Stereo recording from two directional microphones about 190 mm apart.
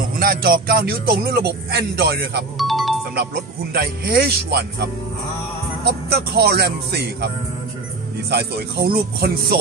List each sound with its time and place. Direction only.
0.2 s speech: 50° right (ahead or behind)
2.5 s music: centre (ahead or behind)
3.7 s speech: 55° right (ahead or behind)
5.9 s speech: 60° right (ahead or behind)
8.3 s speech: 60° right (ahead or behind)